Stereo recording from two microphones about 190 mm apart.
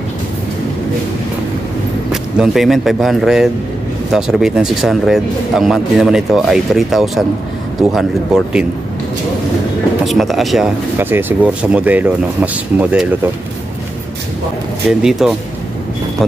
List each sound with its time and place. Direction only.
2.3 s speech: centre (ahead or behind)
10.0 s speech: centre (ahead or behind)
11.0 s speech: 10° right (ahead or behind)
14.9 s speech: centre (ahead or behind)